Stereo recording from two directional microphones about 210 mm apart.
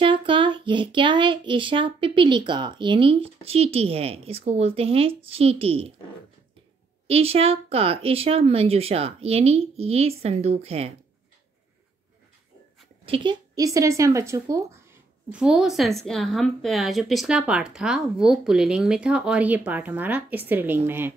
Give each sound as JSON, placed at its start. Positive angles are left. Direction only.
{"t": 0.0, "sound": "speech", "side_deg": -25}
{"t": 7.1, "sound": "speech", "side_deg": -30}
{"t": 13.0, "sound": "speech", "side_deg": -25}